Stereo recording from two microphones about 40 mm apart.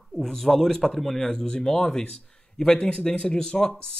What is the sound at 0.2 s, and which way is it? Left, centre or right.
Speech, centre.